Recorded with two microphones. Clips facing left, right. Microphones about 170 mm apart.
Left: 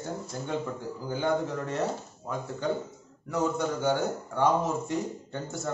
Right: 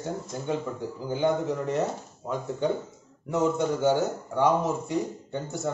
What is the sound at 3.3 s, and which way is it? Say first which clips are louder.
A man's voice: right 3 dB; 25° right (ahead or behind).